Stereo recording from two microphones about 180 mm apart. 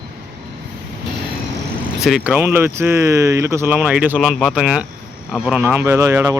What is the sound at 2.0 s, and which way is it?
Speech, 5° right (ahead or behind).